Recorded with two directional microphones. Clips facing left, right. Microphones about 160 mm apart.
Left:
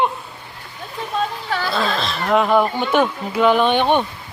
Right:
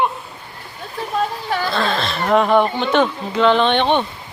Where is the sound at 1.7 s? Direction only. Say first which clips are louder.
Right 1 dB; centre (ahead or behind).